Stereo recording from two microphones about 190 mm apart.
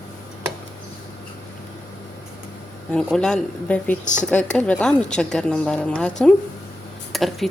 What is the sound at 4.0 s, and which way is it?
Speech, 40° left (ahead or behind).